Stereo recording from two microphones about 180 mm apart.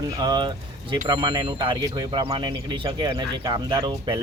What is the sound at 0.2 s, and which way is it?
Speech, 25° right (ahead or behind).